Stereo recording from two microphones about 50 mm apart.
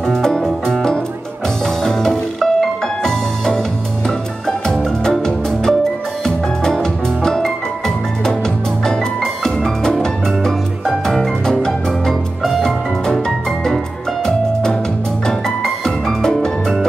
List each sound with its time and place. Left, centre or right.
0.0 s music: centre
8.8 s music: centre
14.2 s music: centre